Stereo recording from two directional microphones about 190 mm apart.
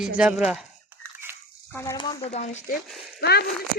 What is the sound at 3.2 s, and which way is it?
Speech, 60° left (ahead or behind).